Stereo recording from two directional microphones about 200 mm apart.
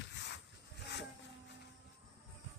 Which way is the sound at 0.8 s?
60° left (ahead or behind).